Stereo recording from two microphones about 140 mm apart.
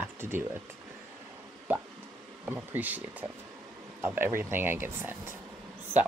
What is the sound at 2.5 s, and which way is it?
Speech, 15° right (ahead or behind).